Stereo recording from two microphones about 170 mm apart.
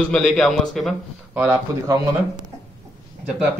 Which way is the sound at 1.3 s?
15° right (ahead or behind).